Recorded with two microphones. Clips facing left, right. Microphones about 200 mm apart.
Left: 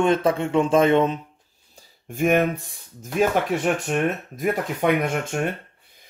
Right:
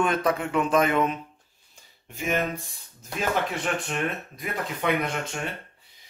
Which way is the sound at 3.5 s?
45° left (ahead or behind).